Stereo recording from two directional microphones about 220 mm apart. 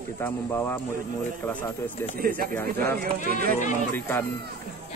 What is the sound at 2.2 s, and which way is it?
Speech, 45° right (ahead or behind).